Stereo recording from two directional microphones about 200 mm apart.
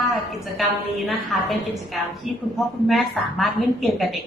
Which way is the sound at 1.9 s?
Centre (ahead or behind).